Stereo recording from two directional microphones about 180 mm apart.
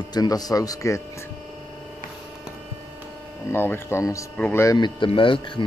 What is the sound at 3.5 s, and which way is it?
Speech, 10° left (ahead or behind).